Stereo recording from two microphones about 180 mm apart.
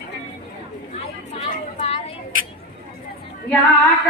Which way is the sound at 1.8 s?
35° left (ahead or behind).